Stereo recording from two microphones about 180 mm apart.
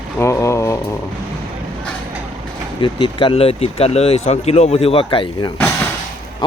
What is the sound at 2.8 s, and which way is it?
Speech, 25° left (ahead or behind).